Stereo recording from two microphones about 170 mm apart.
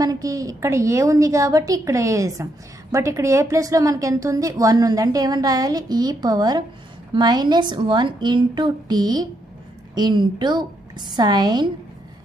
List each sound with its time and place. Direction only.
0.0 s a woman's voice: 20° right (ahead or behind)